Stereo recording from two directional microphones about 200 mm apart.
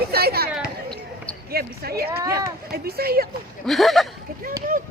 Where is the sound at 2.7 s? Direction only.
50° right (ahead or behind).